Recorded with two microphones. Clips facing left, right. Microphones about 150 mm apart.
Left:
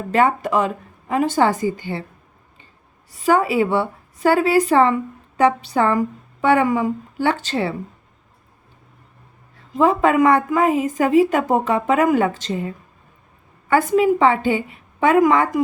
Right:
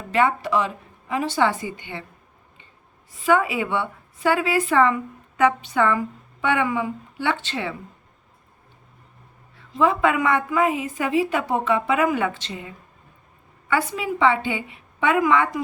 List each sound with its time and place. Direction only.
0.1 s a woman's voice: 40° left (ahead or behind)
3.1 s a woman's voice: 40° left (ahead or behind)
9.6 s a woman's voice: 40° left (ahead or behind)